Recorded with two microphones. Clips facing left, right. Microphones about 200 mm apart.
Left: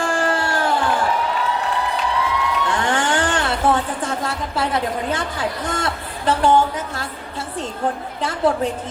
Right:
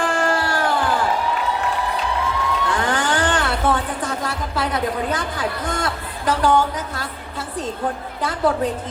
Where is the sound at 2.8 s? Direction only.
25° left (ahead or behind).